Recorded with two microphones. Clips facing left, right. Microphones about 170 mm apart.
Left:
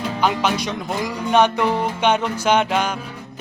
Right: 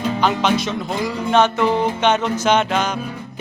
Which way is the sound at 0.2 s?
10° left (ahead or behind).